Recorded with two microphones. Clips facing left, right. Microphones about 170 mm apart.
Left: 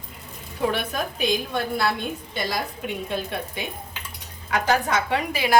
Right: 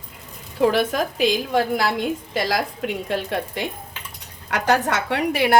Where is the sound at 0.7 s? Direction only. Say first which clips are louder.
Right 6 dB; 90° right.